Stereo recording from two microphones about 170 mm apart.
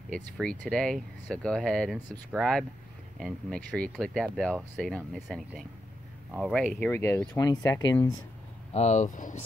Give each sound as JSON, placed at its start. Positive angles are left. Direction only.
{"t": 0.1, "sound": "speech", "side_deg": 5}
{"t": 8.7, "sound": "speech", "side_deg": 40}